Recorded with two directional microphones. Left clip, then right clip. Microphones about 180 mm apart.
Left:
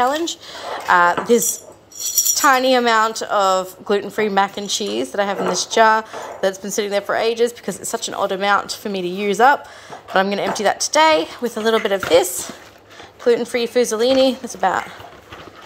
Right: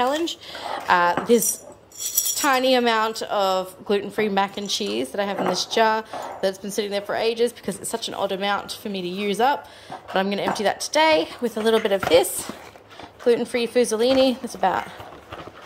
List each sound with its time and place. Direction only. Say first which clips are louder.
0.0 s a woman's voice: left 4 dB; 15° right (ahead or behind)